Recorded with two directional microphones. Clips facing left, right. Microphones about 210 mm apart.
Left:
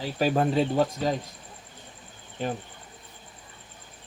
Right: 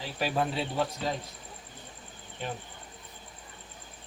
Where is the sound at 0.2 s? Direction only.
45° left (ahead or behind).